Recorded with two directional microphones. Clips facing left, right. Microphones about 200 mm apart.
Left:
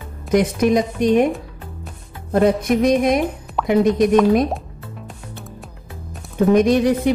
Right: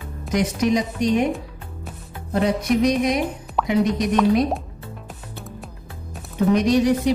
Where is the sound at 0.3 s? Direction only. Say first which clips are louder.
Left 4 dB; 55° left (ahead or behind).